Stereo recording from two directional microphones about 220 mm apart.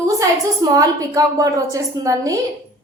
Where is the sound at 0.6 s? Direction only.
15° right (ahead or behind).